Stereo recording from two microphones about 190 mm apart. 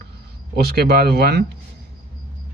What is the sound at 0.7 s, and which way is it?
Speech, 55° right (ahead or behind).